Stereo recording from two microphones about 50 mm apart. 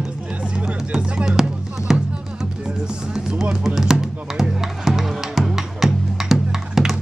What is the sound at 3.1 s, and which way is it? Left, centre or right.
Music, centre.